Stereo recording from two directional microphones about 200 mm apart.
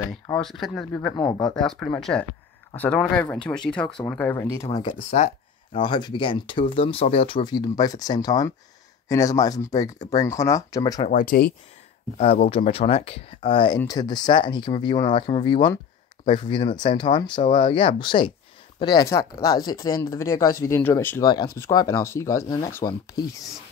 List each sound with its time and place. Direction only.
0.4 s speech: centre (ahead or behind)
1.1 s speech: 20° left (ahead or behind)
1.5 s speech: 5° left (ahead or behind)
4.9 s speech: 35° left (ahead or behind); by 11.1 s 20° left (ahead or behind)
11.1 s speech: 45° left (ahead or behind)
12.2 s speech: 30° left (ahead or behind); by 23.4 s 15° left (ahead or behind)